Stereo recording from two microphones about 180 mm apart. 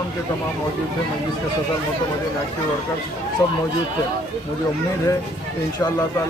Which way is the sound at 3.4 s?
20° left (ahead or behind).